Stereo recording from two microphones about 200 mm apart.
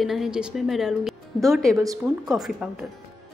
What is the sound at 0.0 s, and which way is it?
A woman's voice, centre (ahead or behind).